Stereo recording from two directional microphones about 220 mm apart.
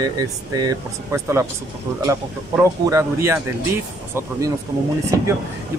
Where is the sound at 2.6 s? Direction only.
10° right (ahead or behind).